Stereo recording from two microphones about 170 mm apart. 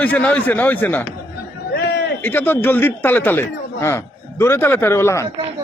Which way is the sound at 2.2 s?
10° left (ahead or behind).